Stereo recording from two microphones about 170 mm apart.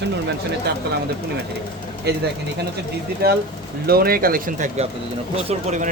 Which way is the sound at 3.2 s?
60° right (ahead or behind).